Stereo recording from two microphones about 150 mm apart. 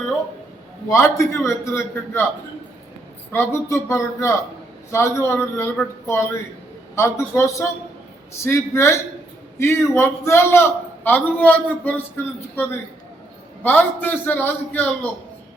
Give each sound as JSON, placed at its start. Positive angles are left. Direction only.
{"t": 0.9, "sound": "a man's voice", "side_deg": 20}
{"t": 3.3, "sound": "a man's voice", "side_deg": 15}